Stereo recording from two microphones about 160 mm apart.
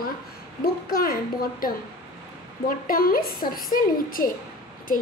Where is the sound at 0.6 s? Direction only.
65° left (ahead or behind).